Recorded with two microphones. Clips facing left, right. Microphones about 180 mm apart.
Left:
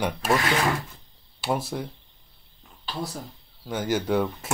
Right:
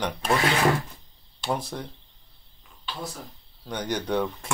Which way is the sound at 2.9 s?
40° left (ahead or behind).